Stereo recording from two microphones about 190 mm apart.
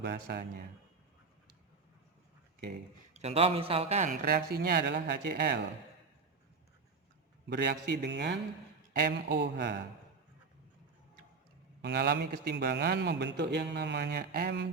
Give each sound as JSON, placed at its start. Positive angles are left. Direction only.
{"t": 0.0, "sound": "a man's voice", "side_deg": -60}
{"t": 3.1, "sound": "speech", "side_deg": -35}
{"t": 4.1, "sound": "speech", "side_deg": -50}
{"t": 7.4, "sound": "a man's voice", "side_deg": -60}
{"t": 11.8, "sound": "a man's voice", "side_deg": -60}